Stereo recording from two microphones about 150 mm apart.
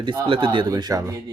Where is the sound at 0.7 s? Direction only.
25° right (ahead or behind).